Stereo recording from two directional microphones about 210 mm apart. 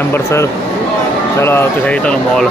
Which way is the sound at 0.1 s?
15° left (ahead or behind).